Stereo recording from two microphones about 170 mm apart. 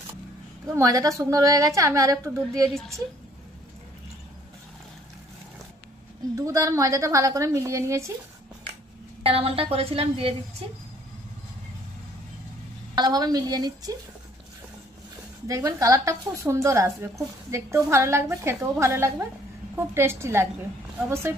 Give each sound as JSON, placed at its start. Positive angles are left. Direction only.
{"t": 0.7, "sound": "a woman's voice", "side_deg": -20}
{"t": 6.3, "sound": "a woman's voice", "side_deg": -20}
{"t": 9.2, "sound": "a woman's voice", "side_deg": -35}
{"t": 12.9, "sound": "a woman's voice", "side_deg": -25}
{"t": 15.4, "sound": "a woman's voice", "side_deg": -20}